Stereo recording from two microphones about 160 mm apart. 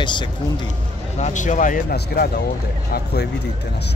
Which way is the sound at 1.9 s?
80° left.